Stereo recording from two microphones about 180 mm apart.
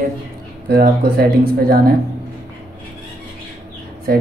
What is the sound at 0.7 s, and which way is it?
Speech, 60° right (ahead or behind).